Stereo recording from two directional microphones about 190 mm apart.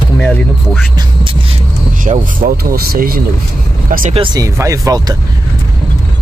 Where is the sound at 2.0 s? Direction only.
45° right (ahead or behind).